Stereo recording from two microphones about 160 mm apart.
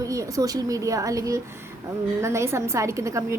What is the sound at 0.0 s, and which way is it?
A woman's voice, 20° right (ahead or behind).